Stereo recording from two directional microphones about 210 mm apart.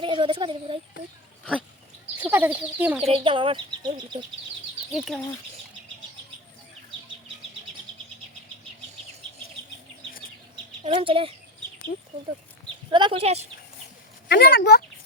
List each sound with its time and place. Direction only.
0.0 s speech: 25° right (ahead or behind)
2.2 s speech: 10° right (ahead or behind)
3.0 s speech: 25° right (ahead or behind)
4.9 s speech: centre (ahead or behind)
10.5 s a sound: 25° right (ahead or behind)
12.9 s speech: 25° right (ahead or behind)
14.3 s speech: 50° left (ahead or behind)